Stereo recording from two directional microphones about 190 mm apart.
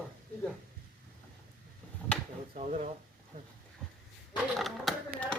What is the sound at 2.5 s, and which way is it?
Speech, 35° right (ahead or behind).